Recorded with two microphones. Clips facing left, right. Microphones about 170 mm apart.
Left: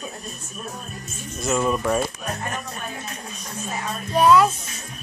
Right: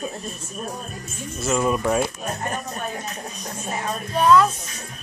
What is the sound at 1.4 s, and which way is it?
Speech, 5° right (ahead or behind).